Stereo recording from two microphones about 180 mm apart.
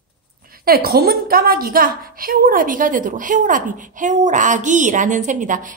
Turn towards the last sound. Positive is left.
turn(degrees=-45)  # may be behind; listen again after turning